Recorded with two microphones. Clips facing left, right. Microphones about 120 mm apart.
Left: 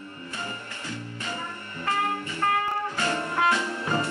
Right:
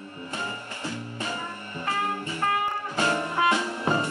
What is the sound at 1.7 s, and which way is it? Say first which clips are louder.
Music: left 1 dB; 20° right (ahead or behind).